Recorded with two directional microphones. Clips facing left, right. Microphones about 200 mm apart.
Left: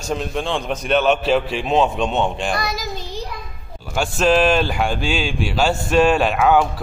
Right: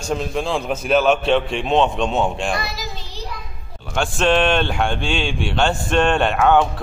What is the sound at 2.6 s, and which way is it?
Child singing, 45° left (ahead or behind).